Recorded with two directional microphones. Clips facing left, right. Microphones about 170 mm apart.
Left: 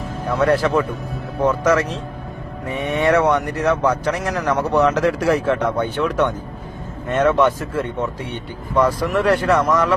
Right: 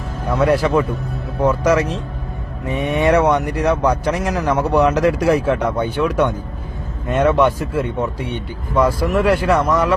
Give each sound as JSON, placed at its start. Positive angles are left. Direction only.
{"t": 0.3, "sound": "a man's voice", "side_deg": -10}